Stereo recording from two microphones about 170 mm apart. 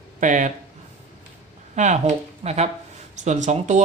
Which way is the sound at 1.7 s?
45° right (ahead or behind).